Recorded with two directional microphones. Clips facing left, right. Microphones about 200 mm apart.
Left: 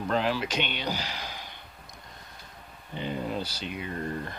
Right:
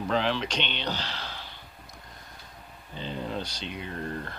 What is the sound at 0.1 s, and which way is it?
A man's voice, 5° left (ahead or behind).